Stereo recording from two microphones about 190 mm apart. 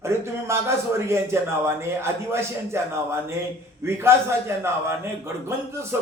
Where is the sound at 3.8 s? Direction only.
15° right (ahead or behind).